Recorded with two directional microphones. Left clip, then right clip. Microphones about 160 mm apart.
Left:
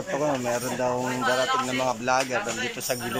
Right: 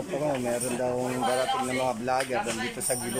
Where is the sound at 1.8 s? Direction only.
5° right (ahead or behind).